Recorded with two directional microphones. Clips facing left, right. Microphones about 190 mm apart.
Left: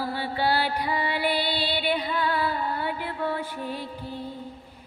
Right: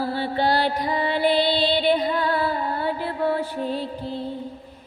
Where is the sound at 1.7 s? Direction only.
40° right (ahead or behind).